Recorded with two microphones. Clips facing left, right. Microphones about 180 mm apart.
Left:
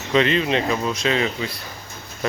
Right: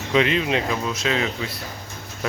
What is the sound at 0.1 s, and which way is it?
Speech, 10° right (ahead or behind).